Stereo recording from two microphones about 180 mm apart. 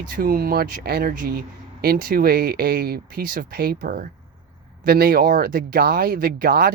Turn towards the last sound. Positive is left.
turn(degrees=-55)  # may be behind; listen again after turning